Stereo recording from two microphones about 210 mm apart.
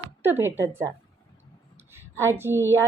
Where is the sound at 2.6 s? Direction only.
15° right (ahead or behind).